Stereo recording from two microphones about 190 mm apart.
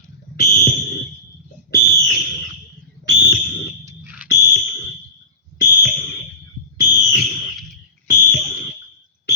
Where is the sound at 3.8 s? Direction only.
10° right (ahead or behind).